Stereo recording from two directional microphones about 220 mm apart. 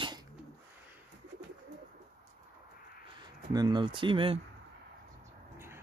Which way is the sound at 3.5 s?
20° right (ahead or behind).